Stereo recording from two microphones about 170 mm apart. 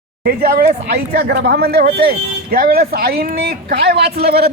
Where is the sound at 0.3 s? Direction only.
65° right (ahead or behind).